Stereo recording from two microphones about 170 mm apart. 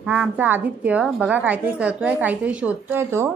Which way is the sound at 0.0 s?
5° right (ahead or behind).